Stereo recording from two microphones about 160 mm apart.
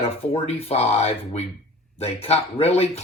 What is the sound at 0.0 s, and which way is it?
Speech, 40° left (ahead or behind).